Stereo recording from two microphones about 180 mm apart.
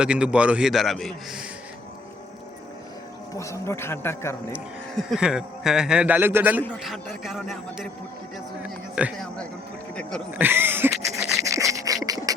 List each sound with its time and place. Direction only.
0.0 s speech: 5° right (ahead or behind)
3.3 s speech: 15° left (ahead or behind)
4.5 s speech: 5° right (ahead or behind)
6.6 s speech: 5° left (ahead or behind)
9.1 s speech: 5° left (ahead or behind)
9.9 s a sound: 5° left (ahead or behind)
10.3 s speech: 10° right (ahead or behind)
11.3 s rub: 15° right (ahead or behind)
12.0 s a sound: 20° right (ahead or behind)